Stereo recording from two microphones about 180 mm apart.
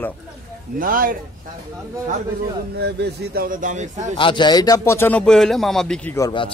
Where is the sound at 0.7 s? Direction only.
50° right (ahead or behind).